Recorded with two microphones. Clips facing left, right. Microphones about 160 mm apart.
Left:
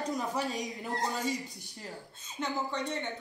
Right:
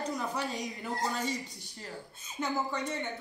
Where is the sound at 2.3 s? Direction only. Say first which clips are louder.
Right 1 dB; centre (ahead or behind).